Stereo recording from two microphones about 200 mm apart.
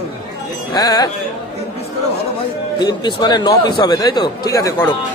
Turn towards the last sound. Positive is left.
turn(degrees=15)  # may be behind; listen again after turning